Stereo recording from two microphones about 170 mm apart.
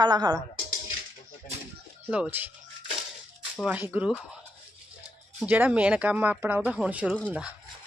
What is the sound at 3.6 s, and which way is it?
Speech, 5° right (ahead or behind).